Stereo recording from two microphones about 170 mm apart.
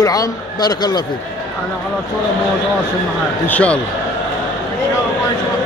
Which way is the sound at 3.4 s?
10° left (ahead or behind).